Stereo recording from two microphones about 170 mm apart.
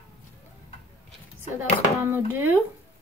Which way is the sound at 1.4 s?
15° right (ahead or behind).